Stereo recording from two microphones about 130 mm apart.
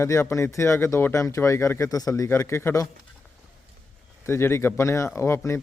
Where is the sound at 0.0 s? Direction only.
20° left (ahead or behind).